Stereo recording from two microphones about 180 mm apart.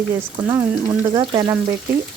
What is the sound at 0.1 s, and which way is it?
Speech, 10° right (ahead or behind).